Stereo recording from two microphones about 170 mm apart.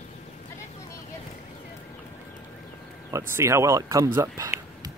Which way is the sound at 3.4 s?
15° right (ahead or behind).